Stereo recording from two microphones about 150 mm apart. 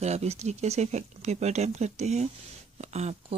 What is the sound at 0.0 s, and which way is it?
Speech, 45° right (ahead or behind).